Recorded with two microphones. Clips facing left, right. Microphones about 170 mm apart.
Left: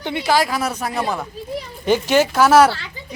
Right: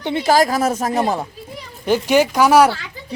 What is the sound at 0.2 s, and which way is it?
Speech, 45° right (ahead or behind).